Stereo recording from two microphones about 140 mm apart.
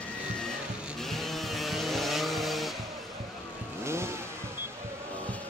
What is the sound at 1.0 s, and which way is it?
Vehicle, centre (ahead or behind).